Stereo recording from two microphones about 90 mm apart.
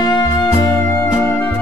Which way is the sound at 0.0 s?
50° left (ahead or behind).